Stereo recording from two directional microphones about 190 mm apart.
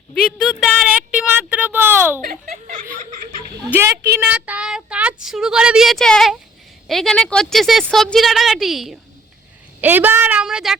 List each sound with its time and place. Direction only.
0.1 s speech: 5° left (ahead or behind)
2.2 s speech: 45° right (ahead or behind)
3.7 s a woman's voice: 10° right (ahead or behind)